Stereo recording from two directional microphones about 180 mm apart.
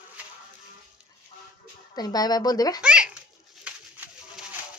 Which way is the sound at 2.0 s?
20° left (ahead or behind).